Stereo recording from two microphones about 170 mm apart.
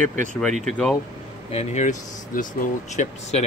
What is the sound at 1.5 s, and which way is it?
Speech, 40° left (ahead or behind).